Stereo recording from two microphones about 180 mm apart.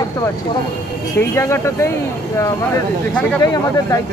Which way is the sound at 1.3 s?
15° left (ahead or behind).